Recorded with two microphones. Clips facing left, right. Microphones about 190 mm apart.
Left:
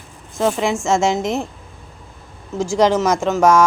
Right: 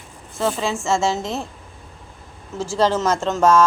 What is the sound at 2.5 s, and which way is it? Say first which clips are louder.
Speech: left 4 dB; 15° left (ahead or behind).